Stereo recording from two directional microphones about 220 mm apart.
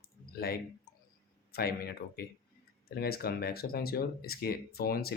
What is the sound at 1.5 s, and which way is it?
Speech, 45° left (ahead or behind).